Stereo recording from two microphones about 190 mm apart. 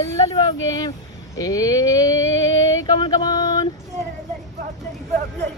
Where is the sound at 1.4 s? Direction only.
20° left (ahead or behind).